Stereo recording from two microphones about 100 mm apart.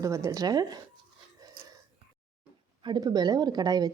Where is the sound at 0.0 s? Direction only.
30° right (ahead or behind).